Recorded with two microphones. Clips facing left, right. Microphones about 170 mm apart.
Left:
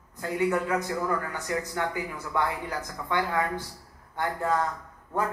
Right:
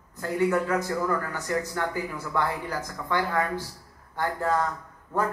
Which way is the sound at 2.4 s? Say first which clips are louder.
Right 1 dB; 20° left (ahead or behind).